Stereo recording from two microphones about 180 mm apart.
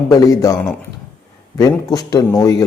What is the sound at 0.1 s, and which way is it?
A man's voice, 20° left (ahead or behind).